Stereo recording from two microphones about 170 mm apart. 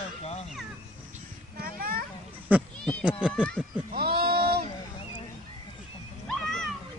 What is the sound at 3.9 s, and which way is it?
Sheep, 65° right (ahead or behind).